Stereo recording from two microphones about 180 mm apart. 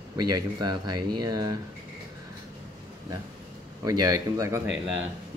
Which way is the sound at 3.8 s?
20° right (ahead or behind).